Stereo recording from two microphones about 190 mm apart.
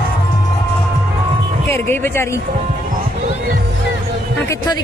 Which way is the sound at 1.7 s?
10° left (ahead or behind).